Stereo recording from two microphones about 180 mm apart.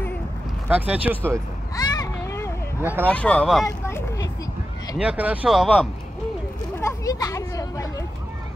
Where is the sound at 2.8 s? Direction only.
10° right (ahead or behind).